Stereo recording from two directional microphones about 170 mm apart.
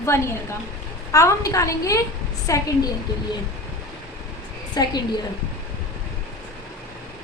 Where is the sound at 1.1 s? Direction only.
20° left (ahead or behind).